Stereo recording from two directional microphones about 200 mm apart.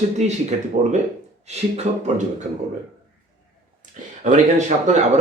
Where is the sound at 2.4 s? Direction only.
40° right (ahead or behind).